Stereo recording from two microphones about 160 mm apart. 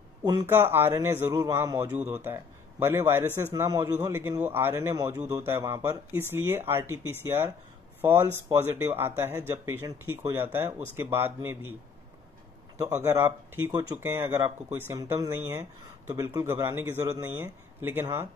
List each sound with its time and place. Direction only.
0.2 s a man's voice: 20° right (ahead or behind)
13.0 s a man's voice: 15° right (ahead or behind)